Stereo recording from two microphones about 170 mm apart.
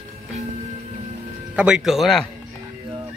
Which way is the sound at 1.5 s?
5° right (ahead or behind).